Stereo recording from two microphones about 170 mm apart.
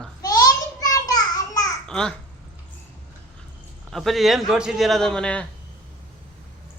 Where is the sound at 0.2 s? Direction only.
20° left (ahead or behind).